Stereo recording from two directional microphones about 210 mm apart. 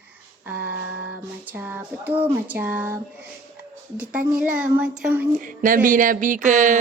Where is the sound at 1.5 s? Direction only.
10° right (ahead or behind).